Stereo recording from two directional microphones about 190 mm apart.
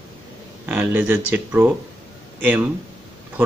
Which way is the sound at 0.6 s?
10° right (ahead or behind).